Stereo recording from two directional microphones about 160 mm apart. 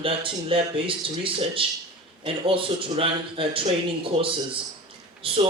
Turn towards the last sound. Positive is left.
turn(degrees=-35)  # may be behind; listen again after turning